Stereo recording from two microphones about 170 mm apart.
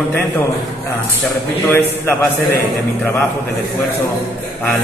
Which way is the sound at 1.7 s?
15° left (ahead or behind).